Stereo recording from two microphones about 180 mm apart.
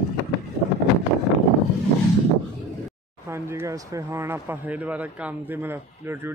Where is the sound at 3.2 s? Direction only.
15° right (ahead or behind).